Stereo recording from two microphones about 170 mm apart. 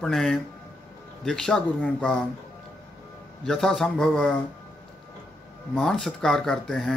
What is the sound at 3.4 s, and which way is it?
Speech, 5° left (ahead or behind).